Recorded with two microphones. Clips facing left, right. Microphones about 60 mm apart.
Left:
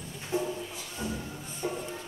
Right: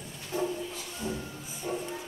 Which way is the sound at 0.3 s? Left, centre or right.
Left.